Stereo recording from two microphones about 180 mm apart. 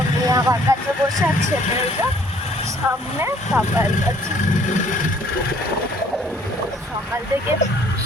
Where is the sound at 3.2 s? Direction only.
15° right (ahead or behind).